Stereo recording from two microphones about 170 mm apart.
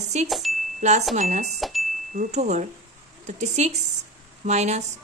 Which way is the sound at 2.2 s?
45° right (ahead or behind).